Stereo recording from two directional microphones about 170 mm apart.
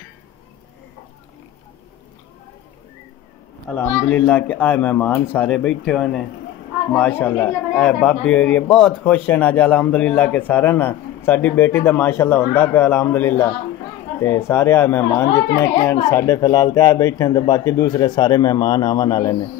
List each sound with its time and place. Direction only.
3.6 s speech: 10° left (ahead or behind)